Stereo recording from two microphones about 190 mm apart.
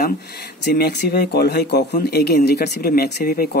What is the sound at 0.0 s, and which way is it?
Speech, 60° left (ahead or behind).